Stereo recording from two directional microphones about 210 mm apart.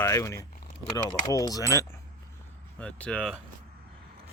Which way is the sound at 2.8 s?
5° left (ahead or behind).